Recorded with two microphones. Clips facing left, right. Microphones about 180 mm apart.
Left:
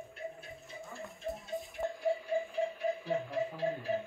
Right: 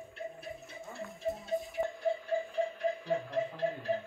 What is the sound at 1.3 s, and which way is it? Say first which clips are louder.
Music: right 7 dB; centre (ahead or behind).